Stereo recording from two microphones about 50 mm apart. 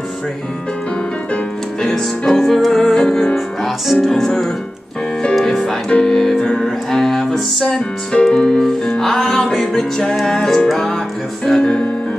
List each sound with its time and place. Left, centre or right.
1.8 s music: centre
3.3 s music: centre